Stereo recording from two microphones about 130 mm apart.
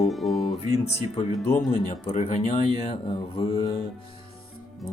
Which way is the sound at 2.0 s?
60° left (ahead or behind).